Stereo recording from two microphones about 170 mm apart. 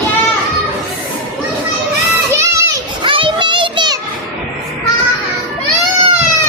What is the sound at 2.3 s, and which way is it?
Children playing, 15° right (ahead or behind).